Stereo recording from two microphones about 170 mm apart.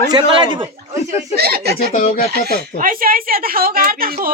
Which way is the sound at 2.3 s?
55° right (ahead or behind).